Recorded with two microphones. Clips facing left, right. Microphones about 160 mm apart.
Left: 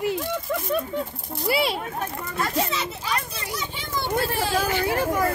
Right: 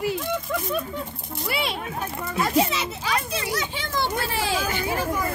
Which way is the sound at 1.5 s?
30° left (ahead or behind).